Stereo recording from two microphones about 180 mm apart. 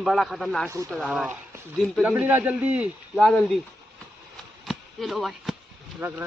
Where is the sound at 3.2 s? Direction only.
5° left (ahead or behind).